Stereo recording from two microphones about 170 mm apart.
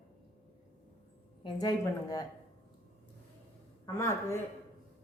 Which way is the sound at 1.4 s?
25° left (ahead or behind).